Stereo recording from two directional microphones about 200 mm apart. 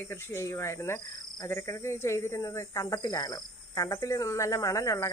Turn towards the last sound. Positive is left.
turn(degrees=15)  # may be behind; listen again after turning